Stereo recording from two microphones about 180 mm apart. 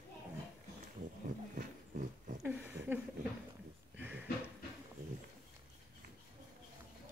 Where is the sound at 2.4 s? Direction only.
10° right (ahead or behind).